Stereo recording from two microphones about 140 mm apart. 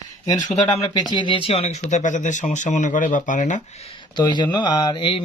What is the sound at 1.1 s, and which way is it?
Speech, 35° left (ahead or behind).